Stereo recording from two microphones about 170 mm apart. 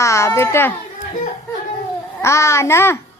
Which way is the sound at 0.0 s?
15° left (ahead or behind).